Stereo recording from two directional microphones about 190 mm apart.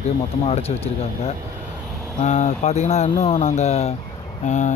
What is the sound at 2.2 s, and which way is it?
Speech, 40° left (ahead or behind).